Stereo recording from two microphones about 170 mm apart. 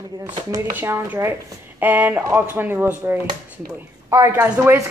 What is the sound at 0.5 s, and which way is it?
A woman's voice, 15° right (ahead or behind).